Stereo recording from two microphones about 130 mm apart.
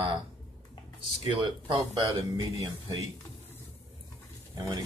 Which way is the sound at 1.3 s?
40° right (ahead or behind).